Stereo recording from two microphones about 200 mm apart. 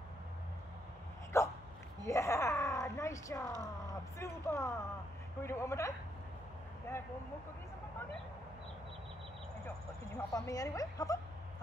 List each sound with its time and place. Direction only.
1.3 s dog: 15° left (ahead or behind)
2.0 s a woman's voice: 15° left (ahead or behind)
10.3 s a woman's voice: 15° left (ahead or behind)